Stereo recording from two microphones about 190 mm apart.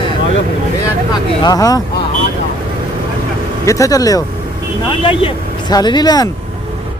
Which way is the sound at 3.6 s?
15° left (ahead or behind).